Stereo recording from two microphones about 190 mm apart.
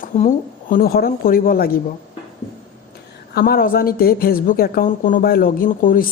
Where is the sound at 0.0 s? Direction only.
45° left (ahead or behind).